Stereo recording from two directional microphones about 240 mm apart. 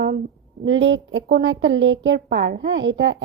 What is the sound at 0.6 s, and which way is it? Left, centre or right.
A woman's voice, right.